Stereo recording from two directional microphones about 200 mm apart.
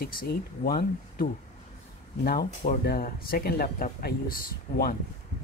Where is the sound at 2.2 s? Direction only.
45° left (ahead or behind).